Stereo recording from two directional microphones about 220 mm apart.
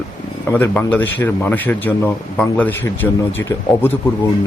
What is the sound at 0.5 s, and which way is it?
A man's voice, 10° left (ahead or behind).